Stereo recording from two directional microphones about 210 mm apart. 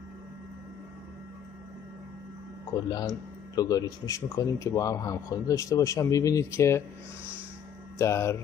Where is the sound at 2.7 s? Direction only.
20° left (ahead or behind).